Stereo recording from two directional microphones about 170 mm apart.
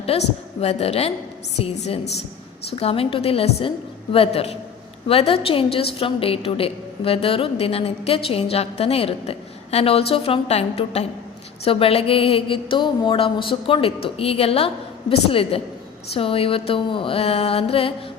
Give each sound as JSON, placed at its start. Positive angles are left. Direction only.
{"t": 0.1, "sound": "a woman's voice", "side_deg": 35}